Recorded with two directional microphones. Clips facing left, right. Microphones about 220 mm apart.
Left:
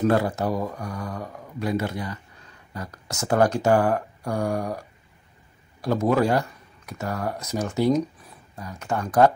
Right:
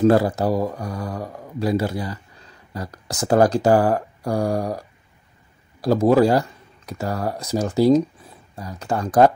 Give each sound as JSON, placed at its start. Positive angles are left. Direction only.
{"t": 0.0, "sound": "speech", "side_deg": -35}